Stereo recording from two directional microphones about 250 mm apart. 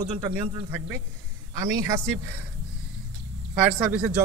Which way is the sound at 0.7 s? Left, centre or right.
Centre.